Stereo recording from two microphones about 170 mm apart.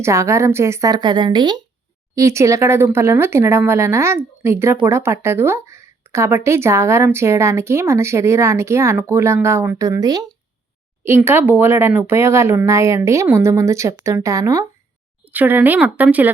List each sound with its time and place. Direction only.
0.0 s speech: 15° right (ahead or behind)
11.3 s speech: 10° right (ahead or behind)